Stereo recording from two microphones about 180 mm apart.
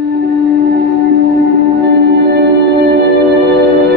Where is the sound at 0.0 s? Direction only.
85° right.